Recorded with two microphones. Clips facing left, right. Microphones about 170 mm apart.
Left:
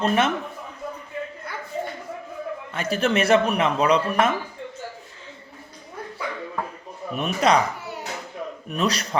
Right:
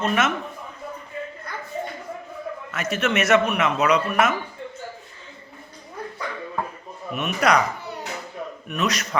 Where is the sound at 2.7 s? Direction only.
30° left (ahead or behind).